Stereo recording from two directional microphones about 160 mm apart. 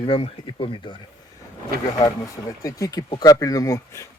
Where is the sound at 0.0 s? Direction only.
35° left (ahead or behind).